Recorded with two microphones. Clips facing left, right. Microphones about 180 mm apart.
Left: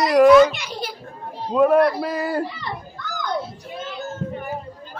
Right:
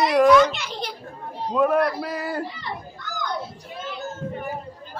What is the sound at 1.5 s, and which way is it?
Speech, 30° left (ahead or behind).